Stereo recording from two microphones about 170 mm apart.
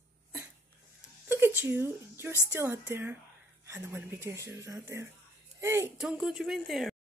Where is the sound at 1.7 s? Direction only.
15° right (ahead or behind).